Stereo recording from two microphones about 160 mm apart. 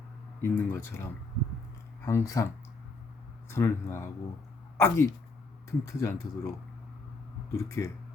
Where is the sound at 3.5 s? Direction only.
15° left (ahead or behind).